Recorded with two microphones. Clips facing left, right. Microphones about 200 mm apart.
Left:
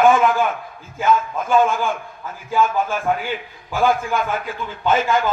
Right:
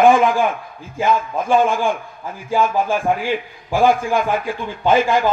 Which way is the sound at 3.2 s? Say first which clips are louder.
Right 5 dB; 30° right (ahead or behind).